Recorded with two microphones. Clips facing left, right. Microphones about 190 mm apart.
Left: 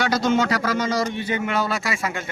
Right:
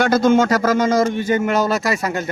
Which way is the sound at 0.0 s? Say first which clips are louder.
Right 6 dB; 50° right (ahead or behind).